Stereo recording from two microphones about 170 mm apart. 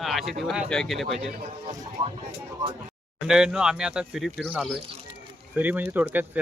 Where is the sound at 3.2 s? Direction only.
5° right (ahead or behind).